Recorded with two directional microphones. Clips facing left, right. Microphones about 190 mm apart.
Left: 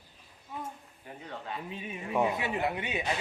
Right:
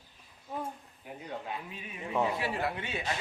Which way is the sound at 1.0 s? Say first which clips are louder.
Right 2 dB; 15° right (ahead or behind).